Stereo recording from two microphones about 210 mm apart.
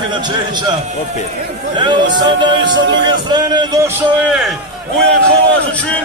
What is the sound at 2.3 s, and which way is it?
A man's voice, 20° right (ahead or behind).